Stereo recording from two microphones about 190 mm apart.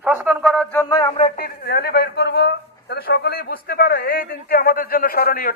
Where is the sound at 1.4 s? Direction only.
55° left (ahead or behind).